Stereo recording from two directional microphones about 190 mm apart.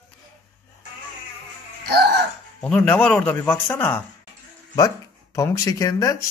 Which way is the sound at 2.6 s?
5° left (ahead or behind).